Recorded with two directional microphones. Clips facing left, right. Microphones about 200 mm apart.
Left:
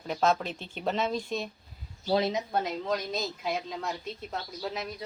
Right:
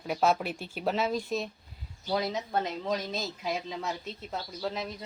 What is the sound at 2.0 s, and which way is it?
Speech, 25° left (ahead or behind).